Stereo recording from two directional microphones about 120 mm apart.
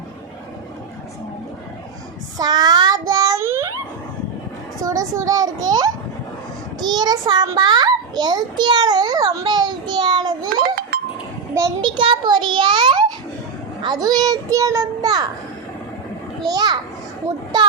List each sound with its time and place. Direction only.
2.4 s child singing: 35° right (ahead or behind)
4.8 s a sound: 30° right (ahead or behind)
6.8 s a child's voice: 35° right (ahead or behind)
11.8 s a child's voice: 45° right (ahead or behind)
16.5 s a child's voice: 35° right (ahead or behind)